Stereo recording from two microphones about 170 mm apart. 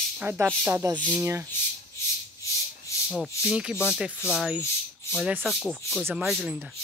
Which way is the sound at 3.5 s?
5° right (ahead or behind).